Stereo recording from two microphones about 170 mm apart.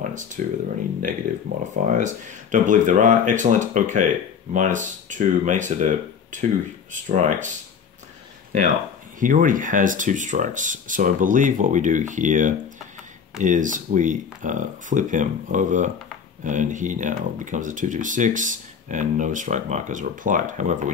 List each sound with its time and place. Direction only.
0.4 s speech: 50° right (ahead or behind)
1.6 s speech: 45° right (ahead or behind)
9.2 s speech: 50° right (ahead or behind)